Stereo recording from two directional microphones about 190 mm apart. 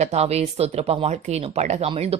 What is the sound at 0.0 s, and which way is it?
Speech, 35° right (ahead or behind).